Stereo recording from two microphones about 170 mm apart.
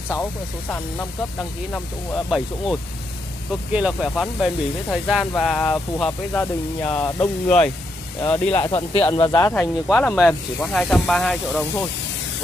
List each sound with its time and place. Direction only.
0.1 s speech: 10° left (ahead or behind)
2.2 s speech: centre (ahead or behind)
8.6 s speech: 25° left (ahead or behind); by 11.6 s centre (ahead or behind)